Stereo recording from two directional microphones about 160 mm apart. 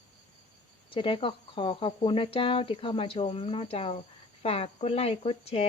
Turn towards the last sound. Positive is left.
turn(degrees=40)  # may be behind; listen again after turning